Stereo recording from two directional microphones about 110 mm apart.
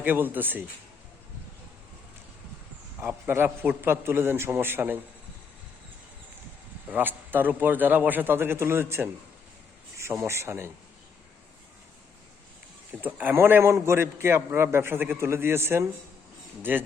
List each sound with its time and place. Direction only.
0.0 s a man's voice: 15° right (ahead or behind)
3.0 s a man's voice: 20° right (ahead or behind)
6.8 s a man's voice: 15° right (ahead or behind)
12.9 s a man's voice: 15° right (ahead or behind)